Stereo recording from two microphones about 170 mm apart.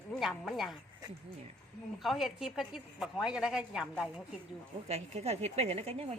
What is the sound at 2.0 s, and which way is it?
A woman's voice, centre (ahead or behind).